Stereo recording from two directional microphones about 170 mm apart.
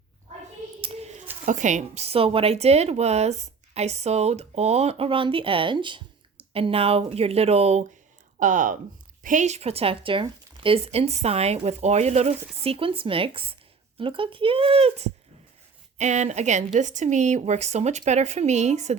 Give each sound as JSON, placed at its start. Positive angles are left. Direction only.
{"t": 0.8, "sound": "a sound", "side_deg": -40}
{"t": 1.5, "sound": "a woman's voice", "side_deg": -45}
{"t": 8.4, "sound": "a woman's voice", "side_deg": -50}